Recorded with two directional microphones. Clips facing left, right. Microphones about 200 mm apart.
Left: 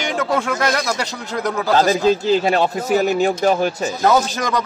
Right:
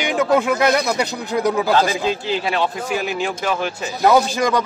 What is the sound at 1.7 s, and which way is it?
Speech, 40° left (ahead or behind).